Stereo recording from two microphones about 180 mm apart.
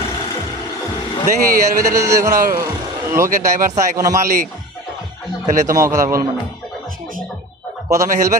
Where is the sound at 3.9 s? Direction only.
20° right (ahead or behind).